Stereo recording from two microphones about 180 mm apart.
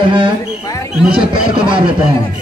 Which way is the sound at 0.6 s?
15° left (ahead or behind).